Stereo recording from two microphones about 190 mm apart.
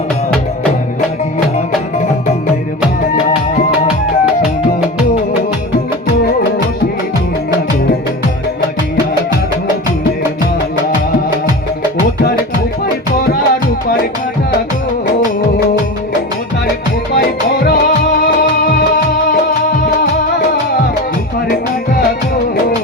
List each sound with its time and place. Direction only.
17.2 s music: 55° left (ahead or behind)